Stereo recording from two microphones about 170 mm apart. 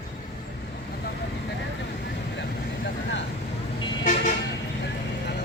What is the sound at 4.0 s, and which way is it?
Vehicle, 45° left (ahead or behind).